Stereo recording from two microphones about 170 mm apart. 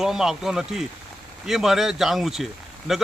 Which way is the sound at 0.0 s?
5° right (ahead or behind).